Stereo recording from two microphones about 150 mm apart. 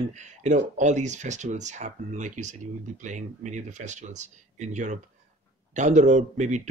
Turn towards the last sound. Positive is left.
turn(degrees=-50)  # may be behind; listen again after turning